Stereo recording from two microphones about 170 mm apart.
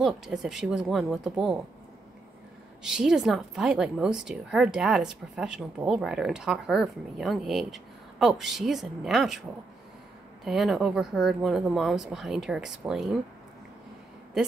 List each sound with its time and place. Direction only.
0.0 s speech: centre (ahead or behind)
2.8 s speech: 5° right (ahead or behind)
10.4 s speech: centre (ahead or behind)